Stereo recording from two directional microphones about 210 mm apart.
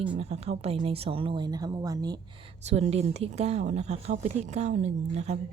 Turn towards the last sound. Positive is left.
turn(degrees=-30)  # may be behind; listen again after turning